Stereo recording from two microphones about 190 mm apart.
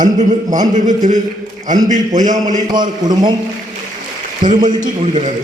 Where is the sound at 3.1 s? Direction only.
20° right (ahead or behind).